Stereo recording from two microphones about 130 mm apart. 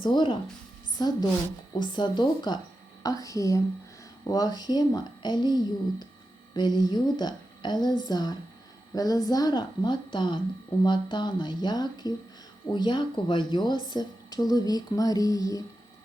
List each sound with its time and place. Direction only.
0.0 s speech: 35° left (ahead or behind)